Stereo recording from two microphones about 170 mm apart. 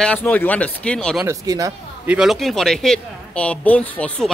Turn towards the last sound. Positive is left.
turn(degrees=10)  # may be behind; listen again after turning